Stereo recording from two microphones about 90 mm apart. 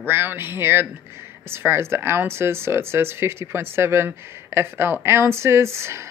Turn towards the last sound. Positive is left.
turn(degrees=-30)  # may be behind; listen again after turning